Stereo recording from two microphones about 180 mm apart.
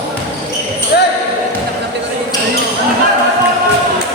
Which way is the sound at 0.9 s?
70° left (ahead or behind).